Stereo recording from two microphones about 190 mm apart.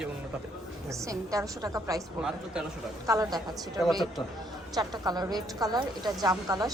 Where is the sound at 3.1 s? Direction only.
20° right (ahead or behind).